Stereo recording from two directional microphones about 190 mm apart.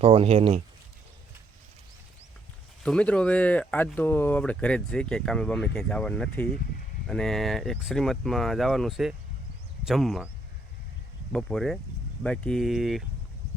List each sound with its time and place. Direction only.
0.0 s speech: 30° right (ahead or behind)
2.8 s speech: 5° left (ahead or behind)
11.3 s speech: centre (ahead or behind)